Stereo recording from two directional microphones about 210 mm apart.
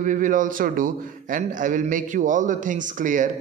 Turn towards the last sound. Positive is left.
turn(degrees=-40)  # may be behind; listen again after turning